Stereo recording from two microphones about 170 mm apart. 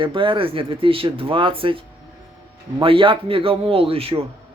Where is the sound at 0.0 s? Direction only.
30° right (ahead or behind).